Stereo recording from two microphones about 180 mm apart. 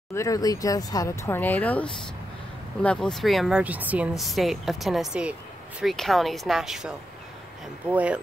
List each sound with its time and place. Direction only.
0.1 s speech: 15° left (ahead or behind); by 8.2 s 5° right (ahead or behind)